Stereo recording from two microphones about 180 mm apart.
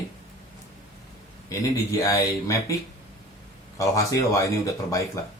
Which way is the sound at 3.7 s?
20° left (ahead or behind).